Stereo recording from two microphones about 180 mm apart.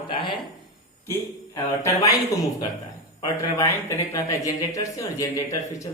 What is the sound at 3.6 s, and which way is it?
A man's voice, 15° left (ahead or behind).